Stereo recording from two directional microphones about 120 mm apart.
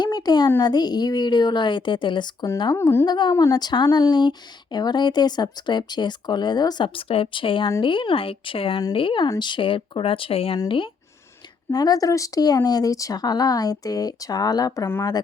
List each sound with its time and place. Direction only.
0.0 s a sound: 35° left (ahead or behind)
0.6 s speech: 35° left (ahead or behind)
2.7 s speech: 20° left (ahead or behind)
3.1 s speech: 40° left (ahead or behind)
11.7 s speech: 30° left (ahead or behind)